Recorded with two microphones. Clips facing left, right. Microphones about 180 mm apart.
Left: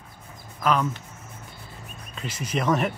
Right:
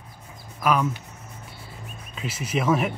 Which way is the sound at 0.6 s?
10° right (ahead or behind).